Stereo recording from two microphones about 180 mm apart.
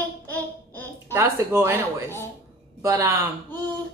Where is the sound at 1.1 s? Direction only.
15° right (ahead or behind).